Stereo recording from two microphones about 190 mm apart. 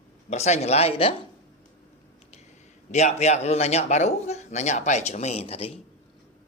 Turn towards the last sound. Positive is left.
turn(degrees=30)  # may be behind; listen again after turning